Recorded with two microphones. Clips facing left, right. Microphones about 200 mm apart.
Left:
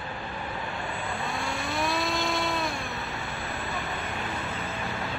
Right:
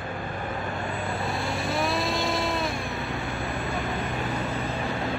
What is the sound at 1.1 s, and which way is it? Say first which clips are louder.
Vehicle: right 3 dB; centre (ahead or behind).